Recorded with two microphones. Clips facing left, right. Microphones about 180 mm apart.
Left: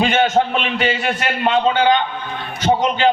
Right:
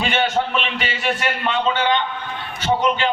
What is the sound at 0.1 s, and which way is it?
A man's voice, 45° left (ahead or behind).